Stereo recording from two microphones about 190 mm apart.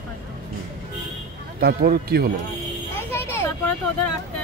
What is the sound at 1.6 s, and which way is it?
Speech, 55° right (ahead or behind).